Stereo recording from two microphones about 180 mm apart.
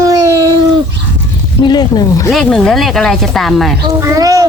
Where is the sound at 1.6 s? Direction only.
25° left (ahead or behind).